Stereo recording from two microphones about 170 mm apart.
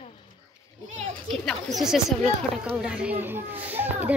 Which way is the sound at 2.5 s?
5° right (ahead or behind).